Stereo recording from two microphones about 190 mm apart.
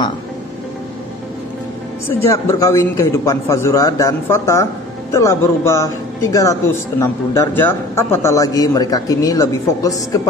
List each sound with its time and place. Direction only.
2.2 s a man's voice: 15° left (ahead or behind)